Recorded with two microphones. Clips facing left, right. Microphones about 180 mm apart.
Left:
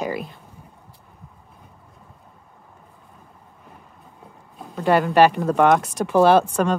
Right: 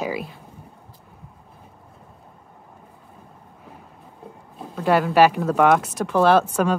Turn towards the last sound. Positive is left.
turn(degrees=-5)  # may be behind; listen again after turning